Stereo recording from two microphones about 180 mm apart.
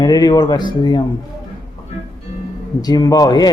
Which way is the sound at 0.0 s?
20° left (ahead or behind).